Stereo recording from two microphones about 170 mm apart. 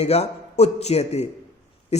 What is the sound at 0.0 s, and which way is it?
A man's voice, 40° left (ahead or behind).